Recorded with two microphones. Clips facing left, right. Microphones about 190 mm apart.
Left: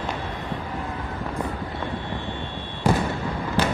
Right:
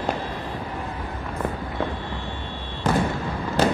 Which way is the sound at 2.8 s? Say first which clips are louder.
Left 1 dB; 10° left (ahead or behind).